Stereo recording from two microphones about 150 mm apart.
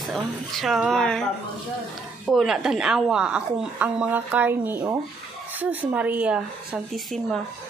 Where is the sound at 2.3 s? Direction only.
Centre (ahead or behind).